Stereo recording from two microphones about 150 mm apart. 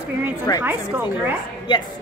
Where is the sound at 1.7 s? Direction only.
30° left (ahead or behind).